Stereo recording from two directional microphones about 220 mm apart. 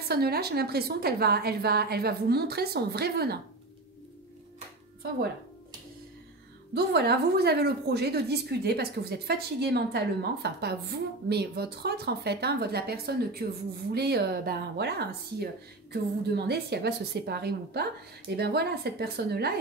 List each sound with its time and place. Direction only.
0.1 s a woman's voice: 45° right (ahead or behind)
6.7 s a woman's voice: 45° right (ahead or behind)